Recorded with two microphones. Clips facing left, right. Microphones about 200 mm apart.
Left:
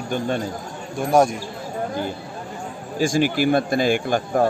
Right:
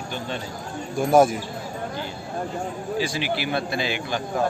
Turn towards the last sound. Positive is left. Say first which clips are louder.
# left 5 dB
turn(degrees=50)  # may be behind; listen again after turning